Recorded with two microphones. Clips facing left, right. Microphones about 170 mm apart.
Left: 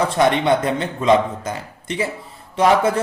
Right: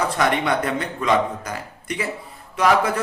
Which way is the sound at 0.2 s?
25° left (ahead or behind).